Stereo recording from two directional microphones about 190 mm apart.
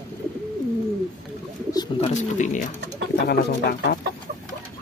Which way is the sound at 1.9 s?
40° left (ahead or behind).